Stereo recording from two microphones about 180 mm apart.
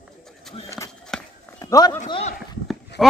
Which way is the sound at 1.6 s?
20° left (ahead or behind).